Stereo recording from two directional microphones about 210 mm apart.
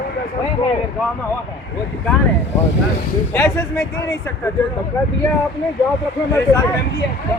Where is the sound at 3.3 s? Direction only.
15° left (ahead or behind).